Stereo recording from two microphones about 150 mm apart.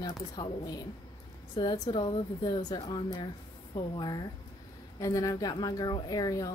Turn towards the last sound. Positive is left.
turn(degrees=25)  # may be behind; listen again after turning